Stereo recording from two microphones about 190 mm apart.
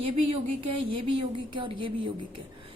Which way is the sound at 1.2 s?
25° right (ahead or behind).